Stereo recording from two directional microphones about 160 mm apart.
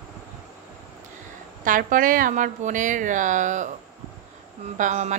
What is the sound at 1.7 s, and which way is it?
A woman's voice, 55° right (ahead or behind).